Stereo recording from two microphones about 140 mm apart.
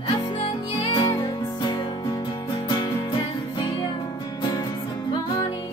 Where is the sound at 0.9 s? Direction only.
35° left (ahead or behind).